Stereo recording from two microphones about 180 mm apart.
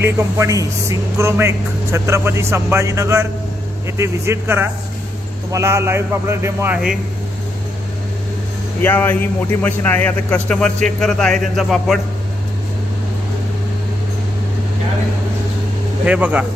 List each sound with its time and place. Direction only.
0.0 s speech: 15° right (ahead or behind)
8.8 s a man's voice: 10° left (ahead or behind)
16.1 s speech: 5° right (ahead or behind)